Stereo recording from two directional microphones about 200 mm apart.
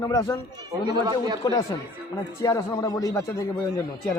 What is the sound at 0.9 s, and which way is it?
Speech, 20° right (ahead or behind).